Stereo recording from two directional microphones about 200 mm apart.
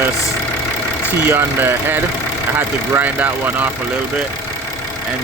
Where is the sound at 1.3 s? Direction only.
10° right (ahead or behind).